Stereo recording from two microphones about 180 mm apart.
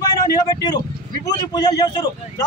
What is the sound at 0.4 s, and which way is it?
Speech, 20° left (ahead or behind).